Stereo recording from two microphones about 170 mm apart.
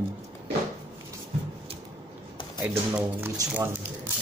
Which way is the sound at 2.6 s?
10° right (ahead or behind).